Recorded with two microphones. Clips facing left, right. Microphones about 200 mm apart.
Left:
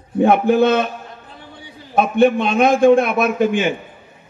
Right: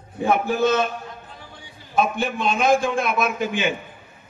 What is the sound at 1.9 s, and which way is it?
A man's voice, 60° left (ahead or behind).